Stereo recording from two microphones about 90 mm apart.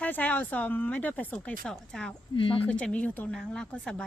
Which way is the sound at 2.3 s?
75° left (ahead or behind).